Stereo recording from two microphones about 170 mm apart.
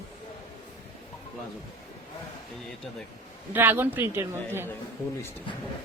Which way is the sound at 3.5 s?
10° right (ahead or behind).